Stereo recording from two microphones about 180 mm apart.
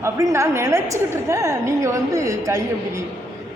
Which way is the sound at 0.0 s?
15° right (ahead or behind).